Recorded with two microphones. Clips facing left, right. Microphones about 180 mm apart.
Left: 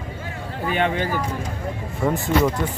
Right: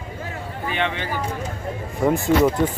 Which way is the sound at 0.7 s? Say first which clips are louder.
Left 4 dB; 45° left (ahead or behind).